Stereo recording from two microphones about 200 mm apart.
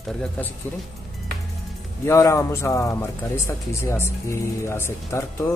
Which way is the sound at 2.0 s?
15° left (ahead or behind).